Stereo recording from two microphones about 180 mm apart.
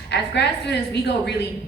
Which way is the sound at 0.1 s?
70° left (ahead or behind).